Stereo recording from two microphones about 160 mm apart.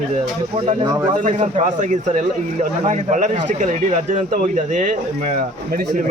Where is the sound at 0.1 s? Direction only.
45° right (ahead or behind).